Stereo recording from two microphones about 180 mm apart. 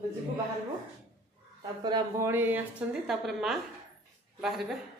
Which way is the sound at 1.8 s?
20° right (ahead or behind).